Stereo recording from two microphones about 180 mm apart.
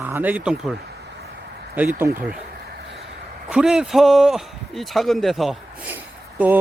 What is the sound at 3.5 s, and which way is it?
Speech, 5° right (ahead or behind).